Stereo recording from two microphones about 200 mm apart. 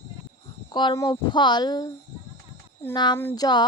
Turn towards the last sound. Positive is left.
turn(degrees=20)  # may be behind; listen again after turning